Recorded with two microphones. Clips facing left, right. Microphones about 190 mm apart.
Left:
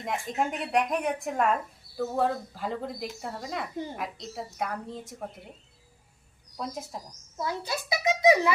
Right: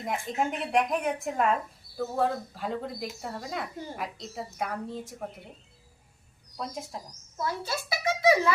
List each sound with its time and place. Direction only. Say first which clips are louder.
0.0 s speech: even; centre (ahead or behind)
6.6 s speech: left 1 dB; centre (ahead or behind)
7.3 s a child's voice: even; 15° left (ahead or behind)